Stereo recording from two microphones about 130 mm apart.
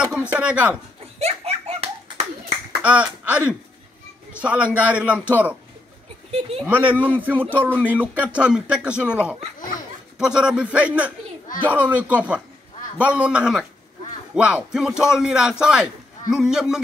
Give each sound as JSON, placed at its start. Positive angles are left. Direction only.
{"t": 0.1, "sound": "speech", "side_deg": -10}
{"t": 1.2, "sound": "bouncing", "side_deg": -50}
{"t": 2.8, "sound": "speech", "side_deg": -10}
{"t": 6.6, "sound": "a man's voice", "side_deg": -15}